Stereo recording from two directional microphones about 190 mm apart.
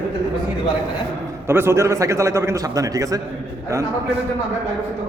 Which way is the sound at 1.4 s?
15° right (ahead or behind).